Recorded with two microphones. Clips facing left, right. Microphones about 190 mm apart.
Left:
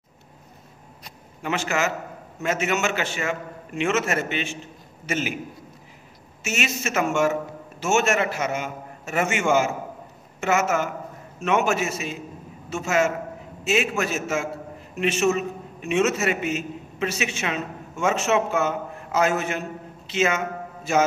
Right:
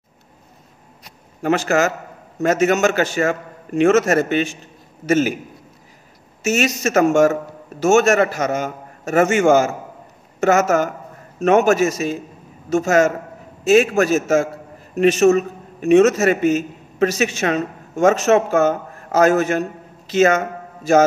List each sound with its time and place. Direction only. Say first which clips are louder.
1.4 s a man's voice: right 8 dB; 40° right (ahead or behind)
6.4 s a man's voice: right 9 dB; 40° right (ahead or behind)